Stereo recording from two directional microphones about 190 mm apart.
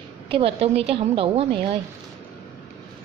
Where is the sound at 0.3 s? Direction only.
30° right (ahead or behind).